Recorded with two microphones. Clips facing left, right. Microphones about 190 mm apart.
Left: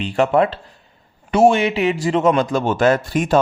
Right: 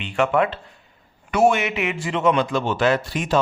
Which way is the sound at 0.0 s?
35° left (ahead or behind).